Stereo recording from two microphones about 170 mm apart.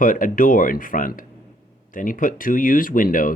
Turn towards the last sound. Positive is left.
turn(degrees=55)  # may be behind; listen again after turning